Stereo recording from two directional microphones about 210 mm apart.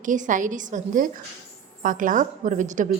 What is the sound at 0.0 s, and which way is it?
A woman's voice, 40° right (ahead or behind).